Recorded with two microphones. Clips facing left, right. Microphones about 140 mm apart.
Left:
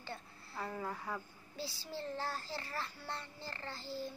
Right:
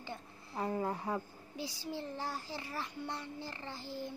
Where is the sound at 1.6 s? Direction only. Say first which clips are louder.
Right 2 dB; 15° right (ahead or behind).